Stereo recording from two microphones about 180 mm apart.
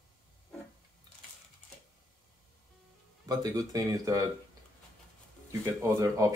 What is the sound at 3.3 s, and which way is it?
Speech, 20° right (ahead or behind).